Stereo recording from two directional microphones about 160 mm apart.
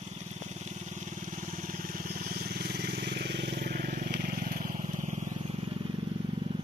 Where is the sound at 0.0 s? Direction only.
45° right (ahead or behind).